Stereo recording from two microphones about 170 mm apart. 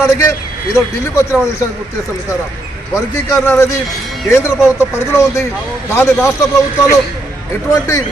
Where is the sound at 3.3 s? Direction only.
15° left (ahead or behind).